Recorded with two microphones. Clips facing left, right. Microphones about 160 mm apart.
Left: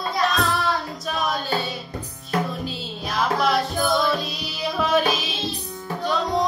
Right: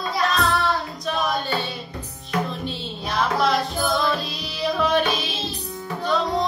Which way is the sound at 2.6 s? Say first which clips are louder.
Right 1 dB; centre (ahead or behind).